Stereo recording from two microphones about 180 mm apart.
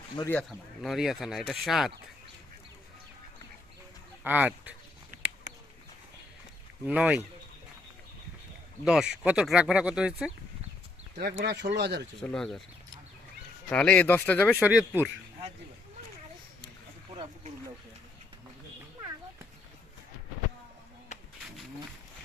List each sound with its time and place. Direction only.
0.2 s speech: 10° left (ahead or behind)
0.8 s speech: centre (ahead or behind)
4.2 s speech: 10° right (ahead or behind)
6.8 s speech: 5° right (ahead or behind)
8.8 s speech: 5° right (ahead or behind)
11.2 s speech: 60° right (ahead or behind)
12.2 s speech: 5° left (ahead or behind)
13.7 s speech: 5° left (ahead or behind)
14.6 s speech: 5° right (ahead or behind)